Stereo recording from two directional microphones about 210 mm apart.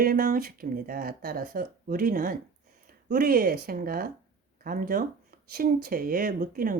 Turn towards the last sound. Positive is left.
turn(degrees=-40)  # may be behind; listen again after turning